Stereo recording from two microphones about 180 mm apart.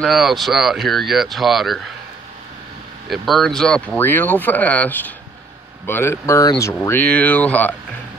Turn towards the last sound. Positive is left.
turn(degrees=10)  # may be behind; listen again after turning